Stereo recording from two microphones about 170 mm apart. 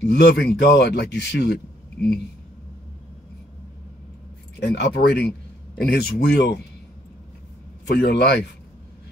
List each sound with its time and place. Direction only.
0.1 s speech: 70° left (ahead or behind)
4.6 s speech: 75° left (ahead or behind)
7.9 s speech: 75° left (ahead or behind)